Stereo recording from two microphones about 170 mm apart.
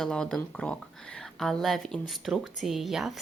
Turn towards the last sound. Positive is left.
turn(degrees=0)  # may be behind; listen again after turning